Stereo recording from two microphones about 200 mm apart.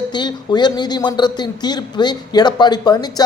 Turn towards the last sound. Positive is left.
turn(degrees=20)  # may be behind; listen again after turning